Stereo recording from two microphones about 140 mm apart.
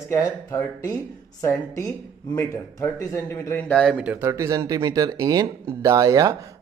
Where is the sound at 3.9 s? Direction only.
10° right (ahead or behind).